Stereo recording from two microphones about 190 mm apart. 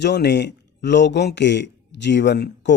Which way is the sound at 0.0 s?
65° left (ahead or behind).